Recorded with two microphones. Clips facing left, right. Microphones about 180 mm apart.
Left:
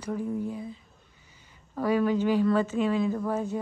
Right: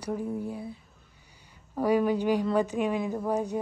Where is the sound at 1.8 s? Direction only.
10° right (ahead or behind).